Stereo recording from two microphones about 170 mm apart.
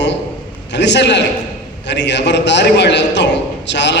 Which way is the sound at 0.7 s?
90° left.